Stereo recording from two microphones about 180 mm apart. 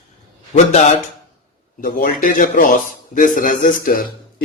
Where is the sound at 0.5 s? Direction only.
40° left (ahead or behind).